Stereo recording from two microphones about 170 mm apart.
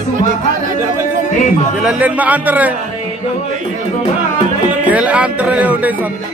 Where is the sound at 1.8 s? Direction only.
5° right (ahead or behind).